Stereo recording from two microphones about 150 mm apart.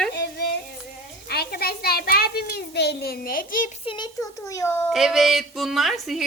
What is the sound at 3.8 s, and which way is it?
A child's voice, 30° left (ahead or behind).